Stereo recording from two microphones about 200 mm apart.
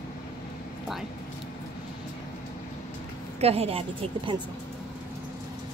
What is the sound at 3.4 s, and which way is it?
Speech, 30° right (ahead or behind).